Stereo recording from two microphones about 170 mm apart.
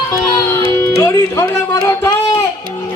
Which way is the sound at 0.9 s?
15° left (ahead or behind).